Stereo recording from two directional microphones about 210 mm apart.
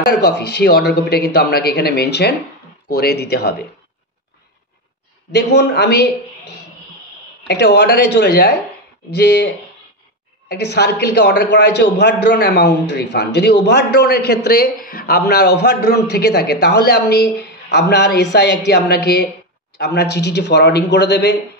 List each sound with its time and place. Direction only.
0.0 s a man's voice: 50° left (ahead or behind)
5.3 s a man's voice: 55° left (ahead or behind)
7.4 s a man's voice: 55° left (ahead or behind)
10.5 s a man's voice: 50° left (ahead or behind)